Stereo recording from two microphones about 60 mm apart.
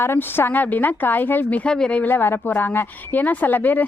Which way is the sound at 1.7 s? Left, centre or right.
Centre.